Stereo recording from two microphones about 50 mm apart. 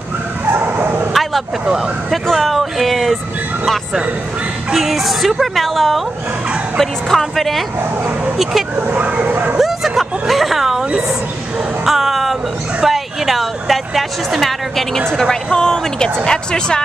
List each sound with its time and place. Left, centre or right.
0.5 s bow-wow: right
2.3 s a woman's voice: centre
4.7 s a woman's voice: centre
8.7 s speech: right
9.6 s a woman's voice: centre